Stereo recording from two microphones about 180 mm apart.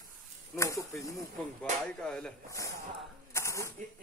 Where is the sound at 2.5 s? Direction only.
15° left (ahead or behind).